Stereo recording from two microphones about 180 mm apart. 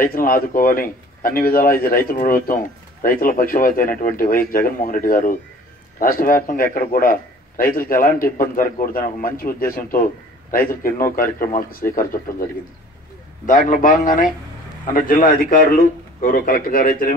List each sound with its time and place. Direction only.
0.0 s a man's voice: 50° left (ahead or behind)
13.5 s a man's voice: 45° left (ahead or behind)